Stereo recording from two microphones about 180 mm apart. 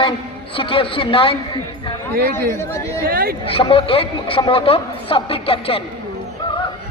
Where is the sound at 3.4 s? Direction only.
30° left (ahead or behind).